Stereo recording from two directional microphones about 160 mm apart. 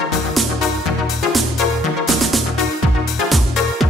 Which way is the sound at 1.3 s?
Centre (ahead or behind).